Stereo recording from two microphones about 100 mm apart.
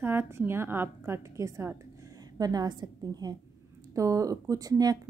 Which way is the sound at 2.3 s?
40° right (ahead or behind).